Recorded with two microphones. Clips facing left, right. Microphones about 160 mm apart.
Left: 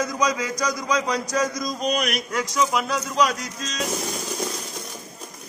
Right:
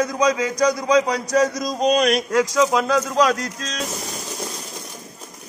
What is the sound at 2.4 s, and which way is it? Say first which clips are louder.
Speech: right 5 dB; 90° right.